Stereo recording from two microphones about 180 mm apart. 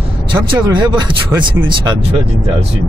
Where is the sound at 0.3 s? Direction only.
25° right (ahead or behind).